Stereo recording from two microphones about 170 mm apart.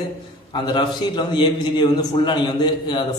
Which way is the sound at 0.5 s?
25° left (ahead or behind).